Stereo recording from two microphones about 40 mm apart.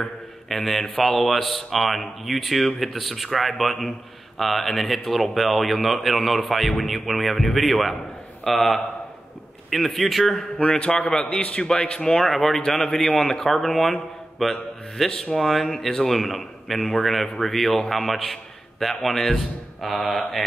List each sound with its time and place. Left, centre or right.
0.0 s a sound: centre
0.9 s a man's voice: centre
10.6 s a man's voice: left
12.2 s a man's voice: centre